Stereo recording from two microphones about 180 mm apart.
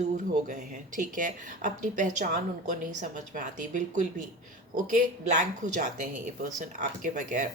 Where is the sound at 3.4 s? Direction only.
45° right (ahead or behind).